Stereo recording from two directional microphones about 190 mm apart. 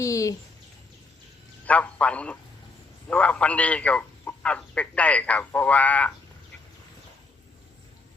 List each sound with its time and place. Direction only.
0.0 s speech: 15° left (ahead or behind)
1.6 s a man's voice: 5° left (ahead or behind)